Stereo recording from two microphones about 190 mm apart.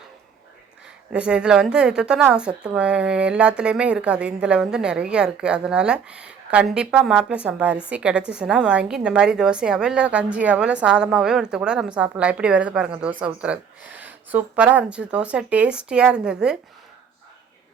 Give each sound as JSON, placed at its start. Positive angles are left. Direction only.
{"t": 1.1, "sound": "a woman's voice", "side_deg": -5}